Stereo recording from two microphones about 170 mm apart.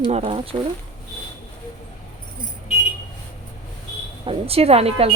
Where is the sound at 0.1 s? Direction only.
40° right (ahead or behind).